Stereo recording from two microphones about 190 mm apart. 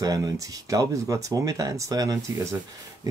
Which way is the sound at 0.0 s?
20° right (ahead or behind).